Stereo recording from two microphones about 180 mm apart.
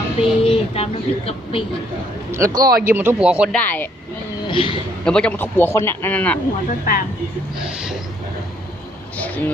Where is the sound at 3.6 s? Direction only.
10° left (ahead or behind).